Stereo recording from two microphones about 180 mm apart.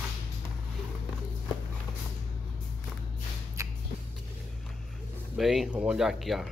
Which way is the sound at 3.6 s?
15° right (ahead or behind).